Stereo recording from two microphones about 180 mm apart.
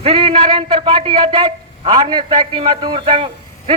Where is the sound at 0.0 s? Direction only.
30° right (ahead or behind).